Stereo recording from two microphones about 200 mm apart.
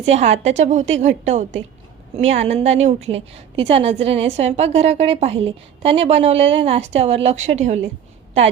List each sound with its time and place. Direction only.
0.0 s a woman's voice: 35° right (ahead or behind)